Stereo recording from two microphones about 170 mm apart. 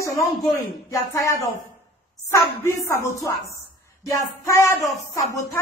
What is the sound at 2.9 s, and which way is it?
A woman's voice, 15° left (ahead or behind).